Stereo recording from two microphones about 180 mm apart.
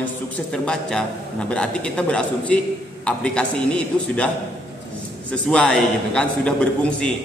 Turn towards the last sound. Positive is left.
turn(degrees=5)  # may be behind; listen again after turning